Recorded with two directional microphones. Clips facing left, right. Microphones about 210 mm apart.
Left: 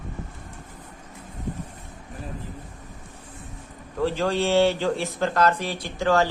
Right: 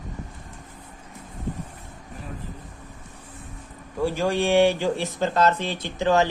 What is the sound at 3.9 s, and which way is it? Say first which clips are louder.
Speech: even; 10° right (ahead or behind).